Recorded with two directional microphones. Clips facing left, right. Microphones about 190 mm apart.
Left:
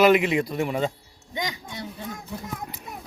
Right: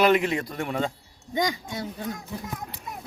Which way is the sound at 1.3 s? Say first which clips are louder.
Right 5 dB; 45° right (ahead or behind).